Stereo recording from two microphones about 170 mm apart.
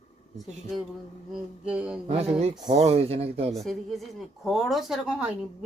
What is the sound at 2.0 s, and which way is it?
Speech, 40° right (ahead or behind).